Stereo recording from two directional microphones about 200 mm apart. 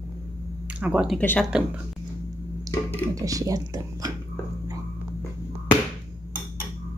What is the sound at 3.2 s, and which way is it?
Speech, 15° right (ahead or behind).